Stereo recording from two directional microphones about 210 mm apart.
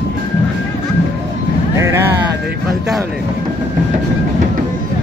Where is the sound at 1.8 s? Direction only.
10° right (ahead or behind).